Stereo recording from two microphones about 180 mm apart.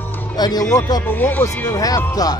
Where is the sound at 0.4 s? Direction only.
20° left (ahead or behind).